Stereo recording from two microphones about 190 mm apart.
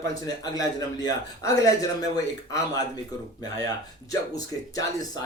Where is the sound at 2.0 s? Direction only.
20° left (ahead or behind).